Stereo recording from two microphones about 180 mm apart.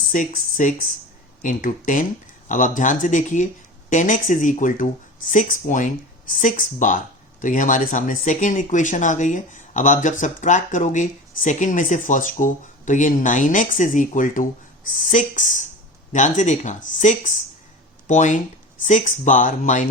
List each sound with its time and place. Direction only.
0.1 s speech: 50° left (ahead or behind)